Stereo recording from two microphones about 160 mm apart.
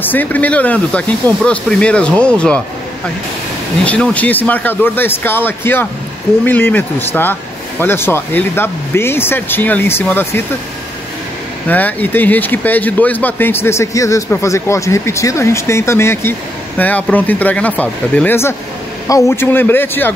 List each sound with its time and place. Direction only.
0.0 s speech: 10° left (ahead or behind)
3.8 s speech: 10° left (ahead or behind)
11.6 s speech: 10° left (ahead or behind)